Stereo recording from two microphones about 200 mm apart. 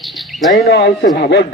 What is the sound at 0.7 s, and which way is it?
Speech, 50° left (ahead or behind).